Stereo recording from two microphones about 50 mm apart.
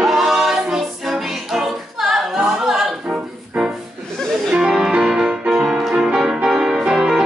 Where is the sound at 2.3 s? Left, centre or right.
Centre.